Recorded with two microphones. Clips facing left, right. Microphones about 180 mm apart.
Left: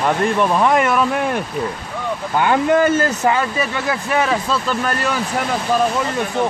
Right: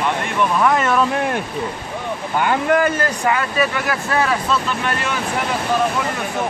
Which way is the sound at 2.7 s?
25° left (ahead or behind).